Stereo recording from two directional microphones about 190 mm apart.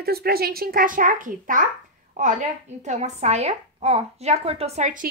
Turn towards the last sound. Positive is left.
turn(degrees=-40)  # may be behind; listen again after turning